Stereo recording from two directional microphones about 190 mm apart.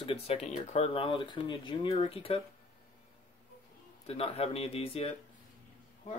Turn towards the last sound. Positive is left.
turn(degrees=30)  # may be behind; listen again after turning